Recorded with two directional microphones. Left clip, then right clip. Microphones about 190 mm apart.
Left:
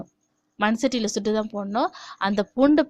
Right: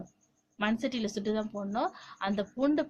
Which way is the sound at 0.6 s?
50° left (ahead or behind).